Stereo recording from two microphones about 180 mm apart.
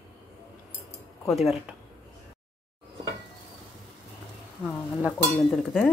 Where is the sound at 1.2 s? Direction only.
Centre (ahead or behind).